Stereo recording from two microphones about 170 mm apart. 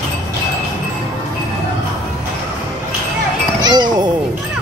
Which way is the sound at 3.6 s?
25° right (ahead or behind).